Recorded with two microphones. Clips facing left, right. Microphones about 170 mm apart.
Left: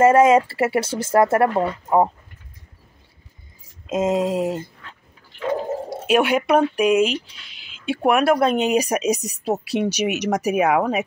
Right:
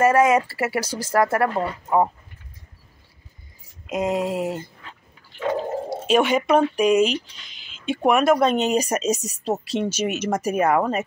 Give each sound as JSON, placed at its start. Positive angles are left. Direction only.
{"t": 0.0, "sound": "speech", "side_deg": 25}
{"t": 3.8, "sound": "speech", "side_deg": 25}
{"t": 5.9, "sound": "speech", "side_deg": 10}